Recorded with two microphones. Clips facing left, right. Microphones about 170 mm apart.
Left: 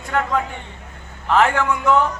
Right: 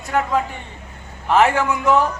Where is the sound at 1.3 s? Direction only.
10° right (ahead or behind).